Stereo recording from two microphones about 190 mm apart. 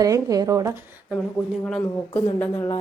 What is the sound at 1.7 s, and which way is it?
Speech, 5° left (ahead or behind).